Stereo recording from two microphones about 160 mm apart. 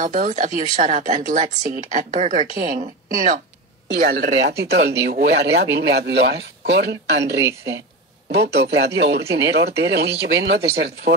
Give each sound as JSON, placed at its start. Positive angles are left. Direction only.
{"t": 0.0, "sound": "speech", "side_deg": -55}
{"t": 3.9, "sound": "speech", "side_deg": -90}
{"t": 7.4, "sound": "speech", "side_deg": -20}
{"t": 8.3, "sound": "speech", "side_deg": -90}